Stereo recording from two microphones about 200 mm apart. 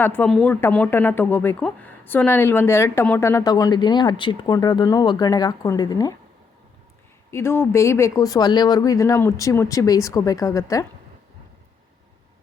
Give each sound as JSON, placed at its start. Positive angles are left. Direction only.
{"t": 0.0, "sound": "speech", "side_deg": 10}
{"t": 7.3, "sound": "speech", "side_deg": 10}